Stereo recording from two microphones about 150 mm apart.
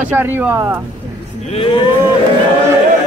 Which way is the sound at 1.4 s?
40° left (ahead or behind).